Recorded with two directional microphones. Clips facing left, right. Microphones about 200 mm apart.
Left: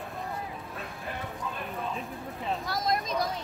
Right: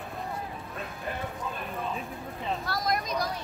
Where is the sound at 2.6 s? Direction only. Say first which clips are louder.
Left 1 dB; 20° left (ahead or behind).